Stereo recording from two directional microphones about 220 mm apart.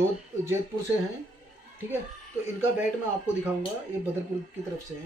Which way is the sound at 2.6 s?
10° right (ahead or behind).